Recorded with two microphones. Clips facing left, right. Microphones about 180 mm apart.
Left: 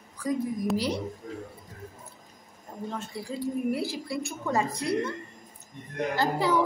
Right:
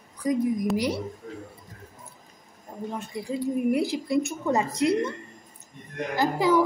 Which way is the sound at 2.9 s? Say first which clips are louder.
Right 4 dB; 15° right (ahead or behind).